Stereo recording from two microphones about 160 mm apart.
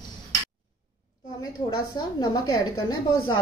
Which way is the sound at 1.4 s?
25° left (ahead or behind).